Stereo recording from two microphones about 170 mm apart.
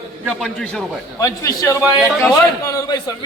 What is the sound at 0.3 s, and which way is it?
Speech, centre (ahead or behind).